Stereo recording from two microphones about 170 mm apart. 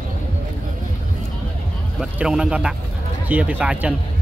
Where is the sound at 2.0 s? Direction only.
5° right (ahead or behind).